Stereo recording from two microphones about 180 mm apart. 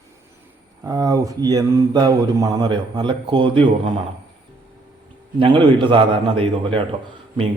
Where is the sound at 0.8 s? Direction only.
20° right (ahead or behind).